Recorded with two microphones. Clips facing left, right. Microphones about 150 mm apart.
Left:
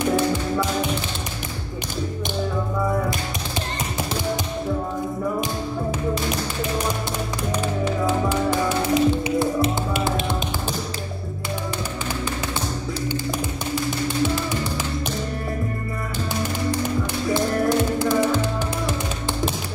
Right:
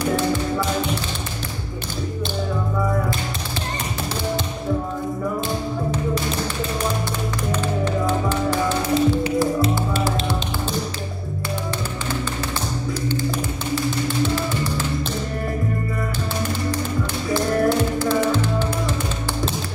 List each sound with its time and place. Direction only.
0.0 s tap: 20° left (ahead or behind)
8.1 s tap: 15° left (ahead or behind)
17.3 s music: 15° left (ahead or behind)